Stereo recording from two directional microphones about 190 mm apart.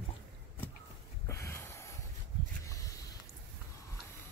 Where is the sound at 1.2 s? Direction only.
15° left (ahead or behind).